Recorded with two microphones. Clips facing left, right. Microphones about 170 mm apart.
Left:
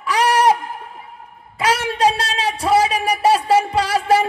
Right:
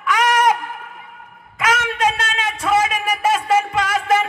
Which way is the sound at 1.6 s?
35° left (ahead or behind).